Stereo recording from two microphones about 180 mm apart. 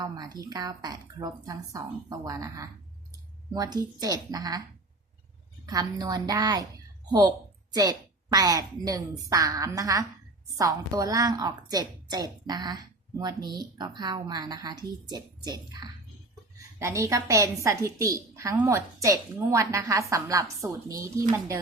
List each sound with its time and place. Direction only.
0.0 s a woman's voice: 20° right (ahead or behind)
5.6 s a woman's voice: 20° right (ahead or behind)